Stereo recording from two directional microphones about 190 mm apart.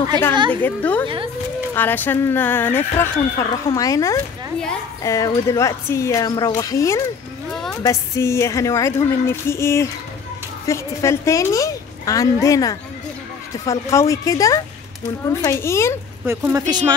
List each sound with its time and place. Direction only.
0.3 s a woman's voice: 25° right (ahead or behind)
0.6 s speech: 10° left (ahead or behind)
16.3 s speech: 15° right (ahead or behind)